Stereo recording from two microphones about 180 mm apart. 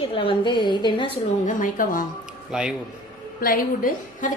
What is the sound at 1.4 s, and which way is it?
Speech, 50° left (ahead or behind).